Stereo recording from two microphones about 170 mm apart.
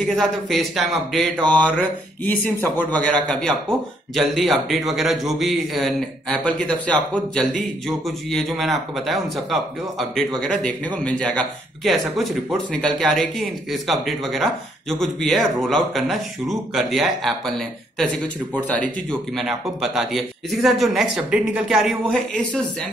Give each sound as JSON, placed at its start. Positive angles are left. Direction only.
{"t": 0.1, "sound": "speech", "side_deg": 0}
{"t": 8.3, "sound": "speech", "side_deg": 0}